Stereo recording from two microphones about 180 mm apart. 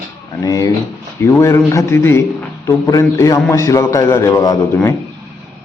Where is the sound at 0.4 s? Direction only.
20° left (ahead or behind).